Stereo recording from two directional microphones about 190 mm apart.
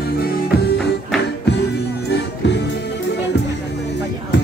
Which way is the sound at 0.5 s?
60° left (ahead or behind).